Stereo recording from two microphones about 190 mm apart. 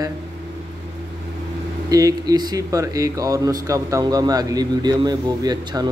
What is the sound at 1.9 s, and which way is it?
Speech, 20° right (ahead or behind).